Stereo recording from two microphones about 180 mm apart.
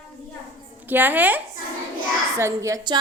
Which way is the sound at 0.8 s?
10° right (ahead or behind).